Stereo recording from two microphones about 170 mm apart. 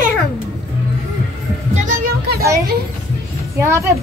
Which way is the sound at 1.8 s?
55° right (ahead or behind).